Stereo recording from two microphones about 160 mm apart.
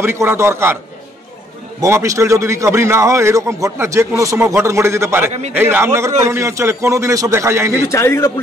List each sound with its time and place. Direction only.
0.0 s a man's voice: 15° right (ahead or behind)
1.8 s a man's voice: 20° right (ahead or behind)
7.7 s a man's voice: 15° left (ahead or behind)